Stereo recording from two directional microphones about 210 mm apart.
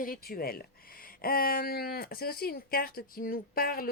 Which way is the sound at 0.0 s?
45° left (ahead or behind).